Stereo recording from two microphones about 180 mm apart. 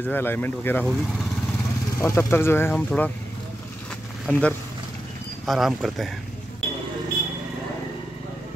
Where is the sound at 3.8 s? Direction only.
5° left (ahead or behind).